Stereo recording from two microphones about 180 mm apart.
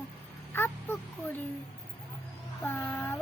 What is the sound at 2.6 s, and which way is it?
Speech, 10° left (ahead or behind).